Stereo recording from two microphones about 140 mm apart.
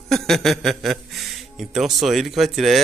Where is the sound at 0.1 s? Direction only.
Centre (ahead or behind).